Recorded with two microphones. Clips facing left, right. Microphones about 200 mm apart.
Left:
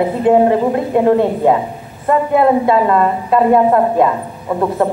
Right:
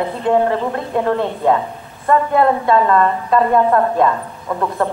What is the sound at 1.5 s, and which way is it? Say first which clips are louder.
A woman's voice: left 2 dB; 15° left (ahead or behind).